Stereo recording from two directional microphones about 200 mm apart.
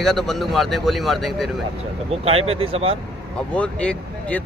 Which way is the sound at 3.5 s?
5° left (ahead or behind).